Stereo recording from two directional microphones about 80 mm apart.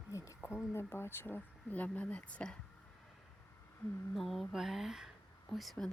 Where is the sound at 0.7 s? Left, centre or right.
Left; by 2.5 s centre.